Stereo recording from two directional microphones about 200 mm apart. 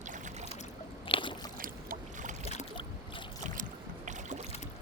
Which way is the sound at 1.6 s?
40° right (ahead or behind).